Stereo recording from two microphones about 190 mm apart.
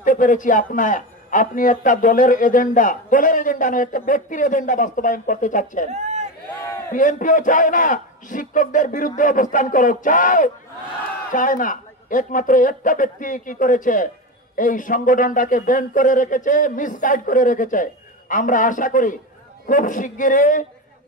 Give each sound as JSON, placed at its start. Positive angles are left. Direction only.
{"t": 0.0, "sound": "a man's voice", "side_deg": 45}
{"t": 5.9, "sound": "a sound", "side_deg": -35}
{"t": 6.9, "sound": "a man's voice", "side_deg": 45}